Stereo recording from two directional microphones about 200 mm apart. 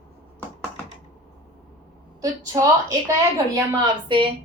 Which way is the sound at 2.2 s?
15° right (ahead or behind).